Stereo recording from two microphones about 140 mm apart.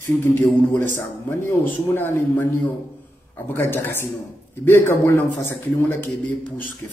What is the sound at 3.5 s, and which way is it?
Speech, 15° left (ahead or behind).